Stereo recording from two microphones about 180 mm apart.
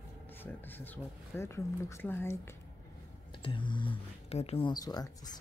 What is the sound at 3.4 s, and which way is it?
Speech, 25° left (ahead or behind).